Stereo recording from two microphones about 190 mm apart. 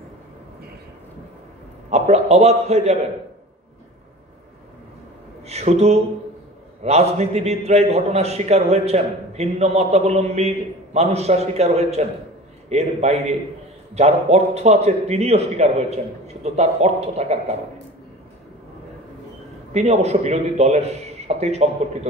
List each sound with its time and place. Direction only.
1.9 s a man's voice: 35° right (ahead or behind)
5.5 s a man's voice: 35° right (ahead or behind)
19.7 s a man's voice: 35° right (ahead or behind)